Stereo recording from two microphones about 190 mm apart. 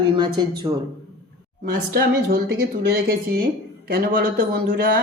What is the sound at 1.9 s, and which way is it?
Speech, 55° right (ahead or behind).